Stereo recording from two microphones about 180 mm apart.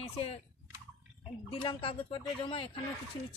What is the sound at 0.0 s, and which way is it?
Speech, 35° left (ahead or behind).